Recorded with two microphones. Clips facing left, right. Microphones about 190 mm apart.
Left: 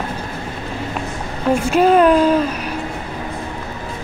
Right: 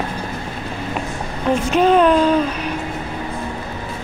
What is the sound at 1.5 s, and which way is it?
Speech, 10° left (ahead or behind).